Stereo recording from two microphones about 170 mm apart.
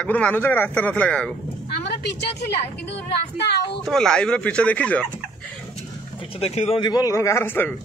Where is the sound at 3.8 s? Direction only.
5° left (ahead or behind).